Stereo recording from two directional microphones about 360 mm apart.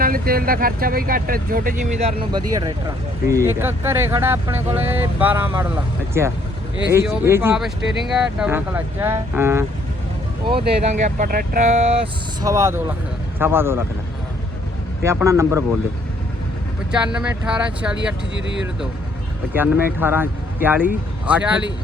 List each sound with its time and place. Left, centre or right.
0.0 s speech: right; by 13.8 s centre
15.0 s speech: centre
16.9 s speech: centre
19.5 s speech: centre